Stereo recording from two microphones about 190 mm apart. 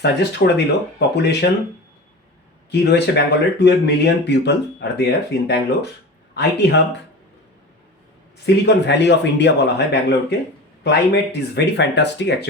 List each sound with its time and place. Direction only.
0.0 s speech: 60° left (ahead or behind)
2.6 s speech: 60° left (ahead or behind)
8.6 s speech: 65° left (ahead or behind)